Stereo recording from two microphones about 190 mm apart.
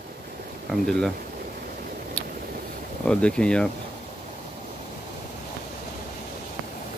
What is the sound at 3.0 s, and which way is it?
Speech, 5° left (ahead or behind).